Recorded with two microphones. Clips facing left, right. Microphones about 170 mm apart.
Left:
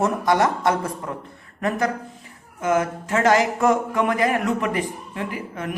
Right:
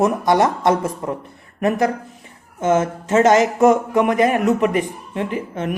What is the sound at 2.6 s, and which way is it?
Speech, 25° right (ahead or behind).